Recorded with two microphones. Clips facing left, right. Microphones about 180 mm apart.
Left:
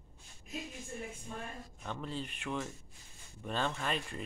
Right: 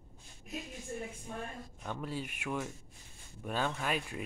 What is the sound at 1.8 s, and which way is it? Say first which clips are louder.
Speech: right 1 dB; 10° right (ahead or behind).